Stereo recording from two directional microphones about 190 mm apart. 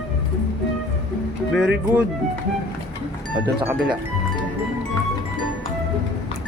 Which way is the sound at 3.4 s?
10° right (ahead or behind).